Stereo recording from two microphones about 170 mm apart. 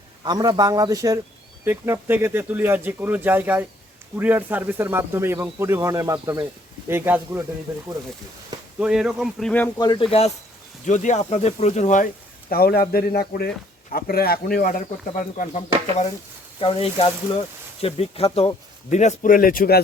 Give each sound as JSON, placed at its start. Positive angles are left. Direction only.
{"t": 0.3, "sound": "speech", "side_deg": -25}
{"t": 8.8, "sound": "speech", "side_deg": -5}
{"t": 9.7, "sound": "speech", "side_deg": 25}
{"t": 10.8, "sound": "speech", "side_deg": 45}
{"t": 16.6, "sound": "speech", "side_deg": 35}